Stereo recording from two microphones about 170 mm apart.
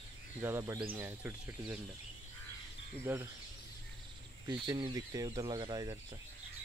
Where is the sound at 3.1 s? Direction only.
10° right (ahead or behind).